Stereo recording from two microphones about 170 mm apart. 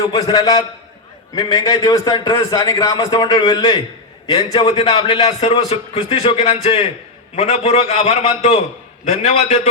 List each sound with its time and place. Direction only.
0.1 s a man's voice: 20° left (ahead or behind)
4.5 s a man's voice: 35° left (ahead or behind)